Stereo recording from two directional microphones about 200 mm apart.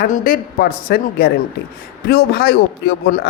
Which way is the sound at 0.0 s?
45° left (ahead or behind).